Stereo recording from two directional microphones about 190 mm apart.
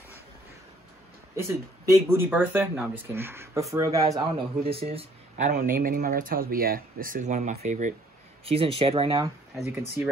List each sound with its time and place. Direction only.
1.3 s speech: 15° right (ahead or behind); by 7.9 s 40° right (ahead or behind)
8.5 s speech: 30° right (ahead or behind)